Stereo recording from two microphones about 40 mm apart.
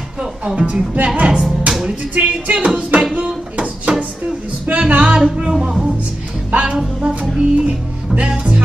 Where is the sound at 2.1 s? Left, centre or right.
Right.